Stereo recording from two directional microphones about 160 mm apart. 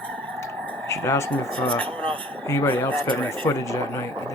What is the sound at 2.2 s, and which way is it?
Speech, 10° left (ahead or behind).